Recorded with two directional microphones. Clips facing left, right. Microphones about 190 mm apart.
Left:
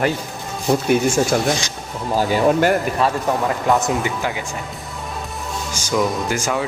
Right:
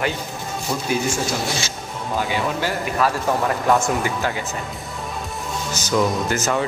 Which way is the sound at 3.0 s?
30° left (ahead or behind).